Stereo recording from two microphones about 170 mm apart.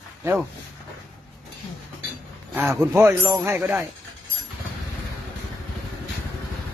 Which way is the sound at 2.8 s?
15° right (ahead or behind).